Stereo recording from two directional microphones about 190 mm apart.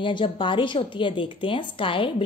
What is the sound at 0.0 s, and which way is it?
A woman's voice, 25° left (ahead or behind).